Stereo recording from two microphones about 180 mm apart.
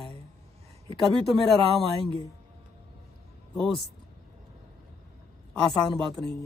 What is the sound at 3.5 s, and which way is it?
Speech, centre (ahead or behind).